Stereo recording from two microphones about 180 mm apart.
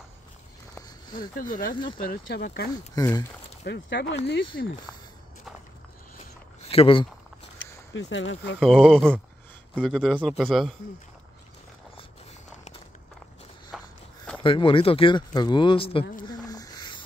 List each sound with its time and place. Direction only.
0.7 s a sound: 20° left (ahead or behind)
1.3 s speech: 50° left (ahead or behind)
2.0 s speech: 65° left (ahead or behind)
3.0 s speech: 20° left (ahead or behind)
3.6 s speech: 75° left (ahead or behind)
6.1 s a sound: 35° left (ahead or behind)
7.9 s speech: 90° left
8.5 s a man's voice: centre (ahead or behind)
13.7 s walk: centre (ahead or behind)
14.4 s speech: 30° left (ahead or behind)
16.3 s a sound: 20° left (ahead or behind)